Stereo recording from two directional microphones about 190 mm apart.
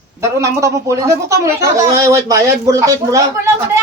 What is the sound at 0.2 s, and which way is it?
Speech, 15° right (ahead or behind).